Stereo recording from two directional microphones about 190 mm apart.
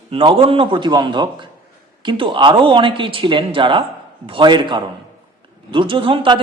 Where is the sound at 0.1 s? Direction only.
30° right (ahead or behind).